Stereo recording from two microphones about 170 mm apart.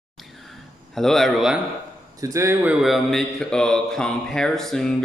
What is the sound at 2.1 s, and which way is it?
Speech, 20° right (ahead or behind).